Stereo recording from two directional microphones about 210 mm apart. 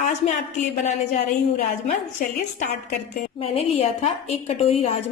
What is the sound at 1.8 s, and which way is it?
A woman's voice, 35° left (ahead or behind).